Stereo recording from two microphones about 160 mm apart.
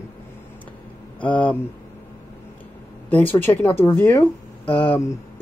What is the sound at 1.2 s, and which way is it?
Speech, 10° left (ahead or behind).